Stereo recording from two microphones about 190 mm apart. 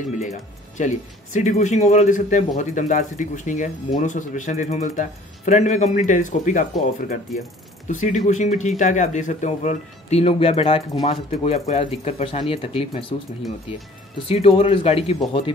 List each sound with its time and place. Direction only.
0.2 s speech: 40° left (ahead or behind)
14.2 s speech: 30° left (ahead or behind)